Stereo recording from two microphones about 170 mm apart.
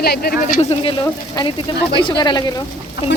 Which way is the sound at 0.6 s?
35° left (ahead or behind).